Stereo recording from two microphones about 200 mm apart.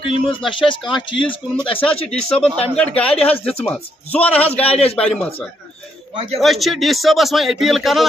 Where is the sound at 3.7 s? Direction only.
5° left (ahead or behind).